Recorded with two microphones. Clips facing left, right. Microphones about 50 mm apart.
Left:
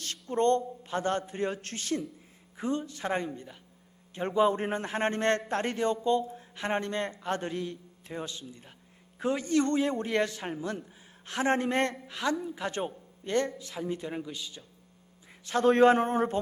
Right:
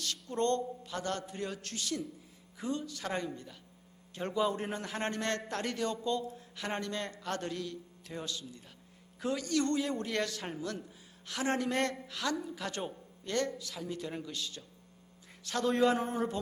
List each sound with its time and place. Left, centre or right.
0.0 s a man's voice: left; by 14.7 s centre
15.4 s speech: left
15.7 s speech: left